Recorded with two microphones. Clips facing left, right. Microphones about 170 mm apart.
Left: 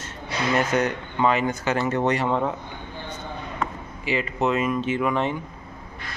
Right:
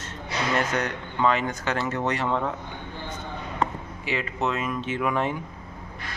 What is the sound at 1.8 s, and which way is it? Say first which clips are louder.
Speech: left 5 dB; 20° left (ahead or behind).